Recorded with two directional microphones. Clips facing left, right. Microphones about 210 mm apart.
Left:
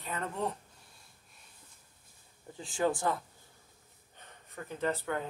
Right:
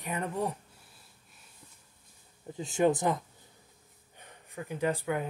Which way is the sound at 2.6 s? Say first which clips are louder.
Right 5 dB; 20° right (ahead or behind).